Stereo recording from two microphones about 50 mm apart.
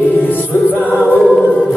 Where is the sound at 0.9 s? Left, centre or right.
Left.